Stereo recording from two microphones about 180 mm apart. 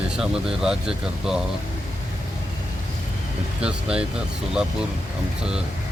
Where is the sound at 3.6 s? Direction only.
5° right (ahead or behind).